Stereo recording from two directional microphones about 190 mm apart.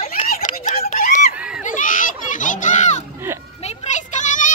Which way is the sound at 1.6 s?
45° left (ahead or behind).